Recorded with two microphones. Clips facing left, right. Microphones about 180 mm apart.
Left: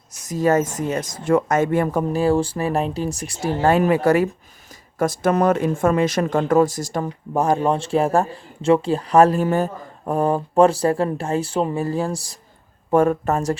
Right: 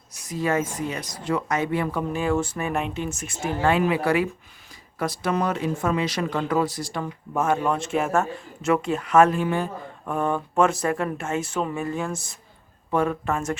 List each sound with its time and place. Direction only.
0.2 s speech: 40° left (ahead or behind)
12.9 s speech: 45° left (ahead or behind)